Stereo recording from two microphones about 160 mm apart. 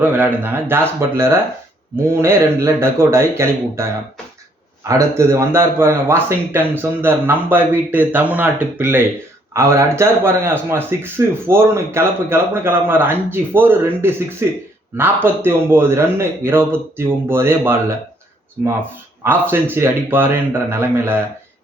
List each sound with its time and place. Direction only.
0.0 s speech: 10° right (ahead or behind)
19.2 s speech: 15° right (ahead or behind)